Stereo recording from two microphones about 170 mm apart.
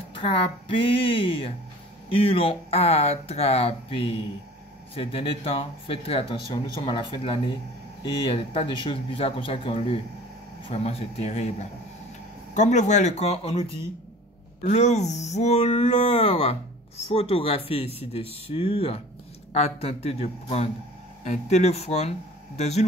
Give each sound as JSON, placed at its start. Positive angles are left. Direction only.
{"t": 0.1, "sound": "speech", "side_deg": 30}
{"t": 12.5, "sound": "speech", "side_deg": 45}